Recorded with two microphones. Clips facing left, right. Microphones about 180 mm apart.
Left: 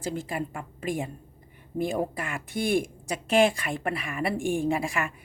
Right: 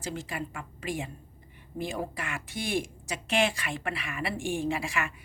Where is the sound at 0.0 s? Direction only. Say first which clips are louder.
Left 4 dB; 50° left (ahead or behind).